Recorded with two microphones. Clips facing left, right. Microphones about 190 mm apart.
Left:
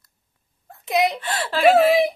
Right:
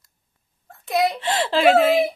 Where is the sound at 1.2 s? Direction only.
25° right (ahead or behind).